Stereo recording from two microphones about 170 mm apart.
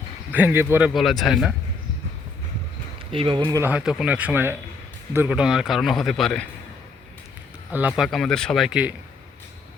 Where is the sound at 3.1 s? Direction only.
30° right (ahead or behind).